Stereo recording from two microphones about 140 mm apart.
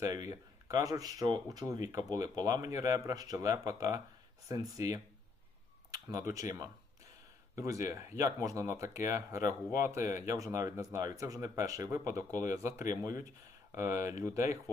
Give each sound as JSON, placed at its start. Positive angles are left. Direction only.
{"t": 0.0, "sound": "speech", "side_deg": -25}
{"t": 5.9, "sound": "a sound", "side_deg": -25}
{"t": 6.3, "sound": "speech", "side_deg": -25}